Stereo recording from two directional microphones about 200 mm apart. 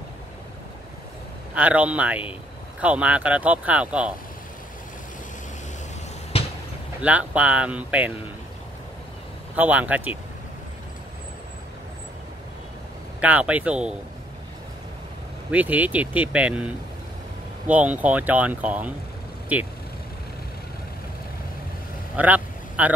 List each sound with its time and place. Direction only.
1.5 s speech: 5° right (ahead or behind)
6.3 s a sound: 30° left (ahead or behind)
7.0 s speech: 5° right (ahead or behind)
9.6 s speech: 10° right (ahead or behind)
13.2 s speech: 5° right (ahead or behind)
15.5 s speech: 5° right (ahead or behind)
22.1 s vehicle: 10° right (ahead or behind)